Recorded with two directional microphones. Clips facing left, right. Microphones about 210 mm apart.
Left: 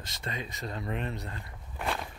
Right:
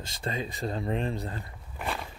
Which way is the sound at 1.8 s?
Centre (ahead or behind).